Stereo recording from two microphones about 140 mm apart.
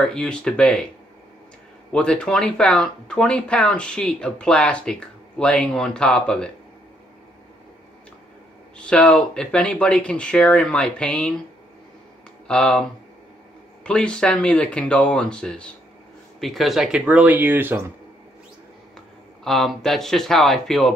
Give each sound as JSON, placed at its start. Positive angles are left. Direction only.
{"t": 0.0, "sound": "speech", "side_deg": 5}
{"t": 1.9, "sound": "speech", "side_deg": 5}
{"t": 8.7, "sound": "speech", "side_deg": 5}
{"t": 12.4, "sound": "speech", "side_deg": 5}
{"t": 13.8, "sound": "speech", "side_deg": 5}
{"t": 18.9, "sound": "speech", "side_deg": 0}